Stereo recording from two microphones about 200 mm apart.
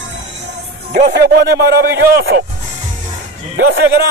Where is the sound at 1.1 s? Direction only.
55° right (ahead or behind).